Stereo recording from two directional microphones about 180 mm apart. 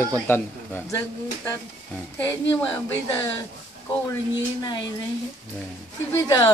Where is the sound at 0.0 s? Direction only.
10° left (ahead or behind).